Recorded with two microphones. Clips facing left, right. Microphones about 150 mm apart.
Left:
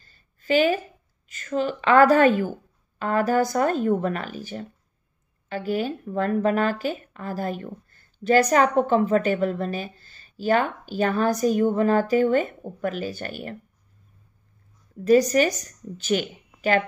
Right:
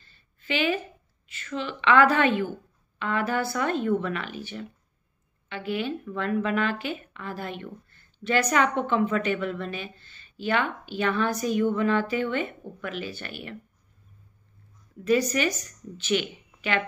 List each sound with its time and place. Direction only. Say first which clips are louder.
0.0 s a sound: left 3 dB; 40° left (ahead or behind)
1.3 s speech: left 7 dB; 40° left (ahead or behind)
15.0 s speech: left 6 dB; 40° left (ahead or behind)